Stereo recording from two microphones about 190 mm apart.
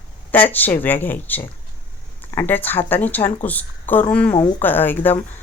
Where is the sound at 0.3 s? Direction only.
10° left (ahead or behind).